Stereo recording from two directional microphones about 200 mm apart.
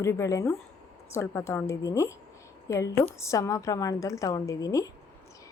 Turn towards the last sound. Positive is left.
turn(degrees=15)  # may be behind; listen again after turning